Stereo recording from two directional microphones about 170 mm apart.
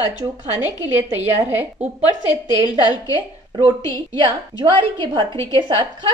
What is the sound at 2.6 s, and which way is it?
Speech, 25° left (ahead or behind).